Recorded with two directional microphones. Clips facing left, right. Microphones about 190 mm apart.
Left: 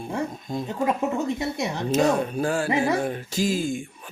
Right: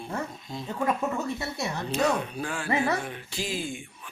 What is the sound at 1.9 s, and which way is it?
Speech, 45° left (ahead or behind).